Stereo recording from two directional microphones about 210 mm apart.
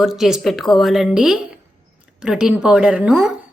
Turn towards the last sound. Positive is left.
turn(degrees=-5)  # may be behind; listen again after turning